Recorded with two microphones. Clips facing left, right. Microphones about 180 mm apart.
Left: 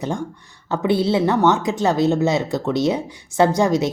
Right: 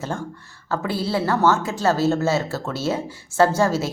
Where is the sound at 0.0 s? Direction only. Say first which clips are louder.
Left 4 dB; 15° left (ahead or behind).